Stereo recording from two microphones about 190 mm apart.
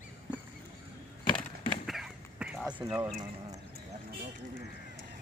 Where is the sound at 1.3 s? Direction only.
25° left (ahead or behind).